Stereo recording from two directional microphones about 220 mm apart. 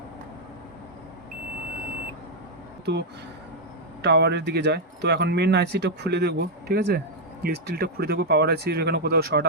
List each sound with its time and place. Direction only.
2.8 s speech: 50° right (ahead or behind)